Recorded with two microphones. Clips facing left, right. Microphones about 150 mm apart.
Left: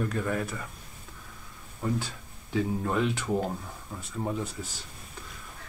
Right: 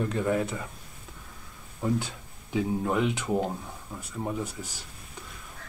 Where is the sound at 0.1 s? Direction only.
20° right (ahead or behind).